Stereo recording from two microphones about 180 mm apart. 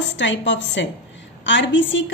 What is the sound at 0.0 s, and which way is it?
Speech, 85° left.